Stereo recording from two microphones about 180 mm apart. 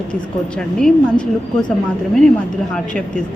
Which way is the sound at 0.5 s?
5° left (ahead or behind).